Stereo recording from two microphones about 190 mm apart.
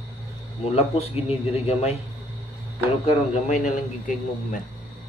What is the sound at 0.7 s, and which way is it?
Speech, 30° left (ahead or behind).